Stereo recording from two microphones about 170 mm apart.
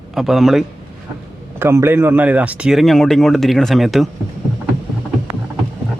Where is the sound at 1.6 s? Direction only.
15° right (ahead or behind).